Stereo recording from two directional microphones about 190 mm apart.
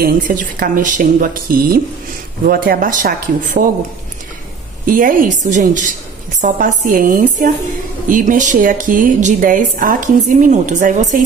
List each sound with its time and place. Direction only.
0.0 s a woman's voice: 45° right (ahead or behind)
4.8 s a woman's voice: 45° right (ahead or behind)